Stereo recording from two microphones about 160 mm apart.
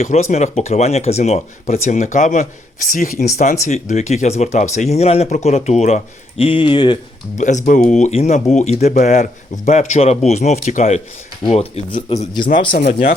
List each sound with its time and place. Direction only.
0.0 s speech: 45° left (ahead or behind)
3.2 s speech: 45° left (ahead or behind)
7.3 s speech: 50° left (ahead or behind)
11.4 s speech: 35° left (ahead or behind)
12.7 s speech: 70° left (ahead or behind)